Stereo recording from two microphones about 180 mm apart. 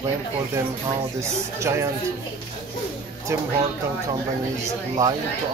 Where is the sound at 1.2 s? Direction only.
15° right (ahead or behind).